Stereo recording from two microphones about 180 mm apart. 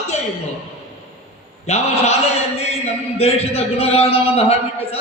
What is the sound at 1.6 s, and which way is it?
Speech, 35° left (ahead or behind).